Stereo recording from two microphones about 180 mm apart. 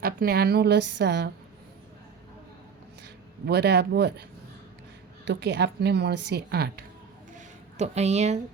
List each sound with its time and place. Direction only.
0.0 s a woman's voice: 55° right (ahead or behind)
3.4 s speech: 65° right (ahead or behind)
5.2 s a woman's voice: 75° right (ahead or behind)
7.3 s a sound: 40° right (ahead or behind)